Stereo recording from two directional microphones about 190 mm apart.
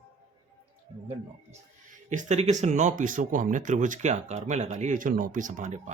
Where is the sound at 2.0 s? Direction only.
40° right (ahead or behind).